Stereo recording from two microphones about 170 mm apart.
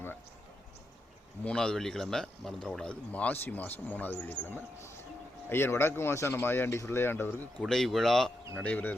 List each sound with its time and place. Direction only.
1.5 s speech: 5° left (ahead or behind)
7.6 s speech: centre (ahead or behind)